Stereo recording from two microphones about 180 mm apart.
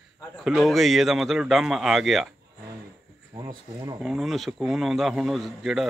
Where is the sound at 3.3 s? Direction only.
20° right (ahead or behind).